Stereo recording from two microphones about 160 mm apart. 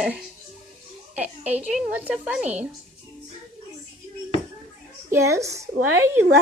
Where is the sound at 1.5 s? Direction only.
10° right (ahead or behind).